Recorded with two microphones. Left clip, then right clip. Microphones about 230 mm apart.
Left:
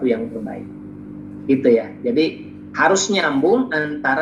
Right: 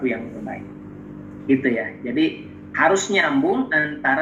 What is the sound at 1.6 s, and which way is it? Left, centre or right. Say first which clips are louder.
Speech: left 7 dB; left.